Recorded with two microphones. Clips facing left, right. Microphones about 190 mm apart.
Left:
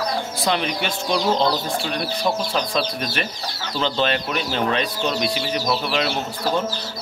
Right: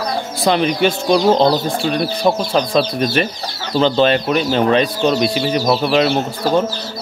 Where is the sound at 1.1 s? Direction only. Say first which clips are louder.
Right 6 dB; 40° right (ahead or behind).